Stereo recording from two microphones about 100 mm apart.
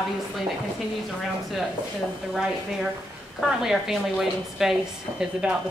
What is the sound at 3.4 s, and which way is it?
A woman's voice, 5° right (ahead or behind).